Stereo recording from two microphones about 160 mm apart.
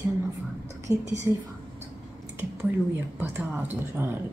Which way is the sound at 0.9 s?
5° right (ahead or behind).